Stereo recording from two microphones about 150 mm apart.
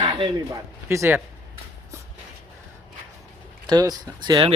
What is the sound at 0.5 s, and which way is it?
Speech, 20° right (ahead or behind).